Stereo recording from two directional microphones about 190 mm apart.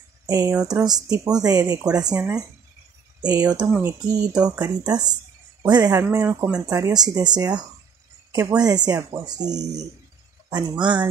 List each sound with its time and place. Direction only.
0.3 s speech: 20° right (ahead or behind)
10.5 s speech: 25° right (ahead or behind)